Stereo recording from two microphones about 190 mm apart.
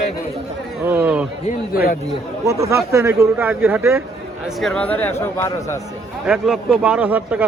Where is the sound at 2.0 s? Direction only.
15° right (ahead or behind).